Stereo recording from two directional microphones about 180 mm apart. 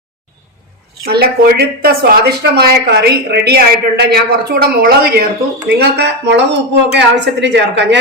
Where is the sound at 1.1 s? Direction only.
60° right (ahead or behind).